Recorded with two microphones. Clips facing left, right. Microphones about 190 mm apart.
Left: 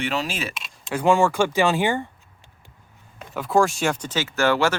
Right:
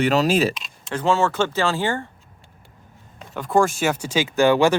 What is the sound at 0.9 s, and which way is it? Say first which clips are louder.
Speech: left 1 dB; 15° left (ahead or behind).